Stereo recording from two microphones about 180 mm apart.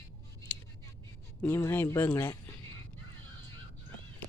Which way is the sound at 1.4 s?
15° left (ahead or behind).